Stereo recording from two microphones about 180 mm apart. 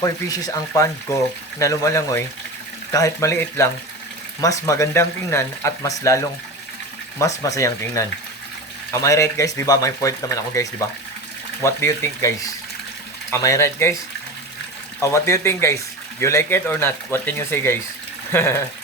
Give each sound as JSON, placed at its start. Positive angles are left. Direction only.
{"t": 0.0, "sound": "speech", "side_deg": 20}
{"t": 15.0, "sound": "speech", "side_deg": 15}